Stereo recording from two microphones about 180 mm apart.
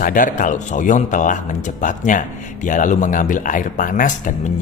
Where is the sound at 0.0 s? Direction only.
45° left (ahead or behind).